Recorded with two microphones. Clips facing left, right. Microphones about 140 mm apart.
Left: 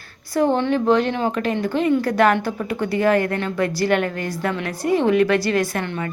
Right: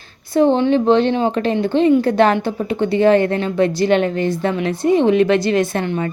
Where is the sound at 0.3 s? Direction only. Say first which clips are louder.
Right 5 dB; 20° right (ahead or behind).